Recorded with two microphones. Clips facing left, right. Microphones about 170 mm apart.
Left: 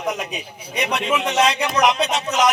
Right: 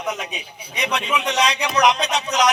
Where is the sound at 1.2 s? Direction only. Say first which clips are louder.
Left 3 dB; 55° left (ahead or behind).